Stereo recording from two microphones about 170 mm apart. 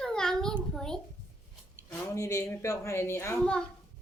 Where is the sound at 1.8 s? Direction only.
20° left (ahead or behind).